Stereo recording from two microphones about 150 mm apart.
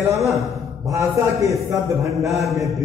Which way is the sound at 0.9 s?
20° right (ahead or behind).